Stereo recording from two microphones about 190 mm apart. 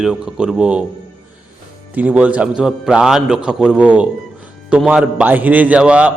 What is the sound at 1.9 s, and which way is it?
A man's voice, 10° right (ahead or behind).